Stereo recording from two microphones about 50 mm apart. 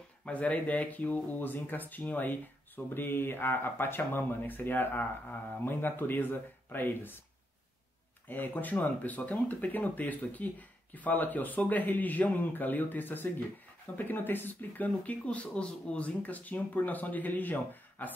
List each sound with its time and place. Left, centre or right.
0.2 s speech: left
8.3 s speech: left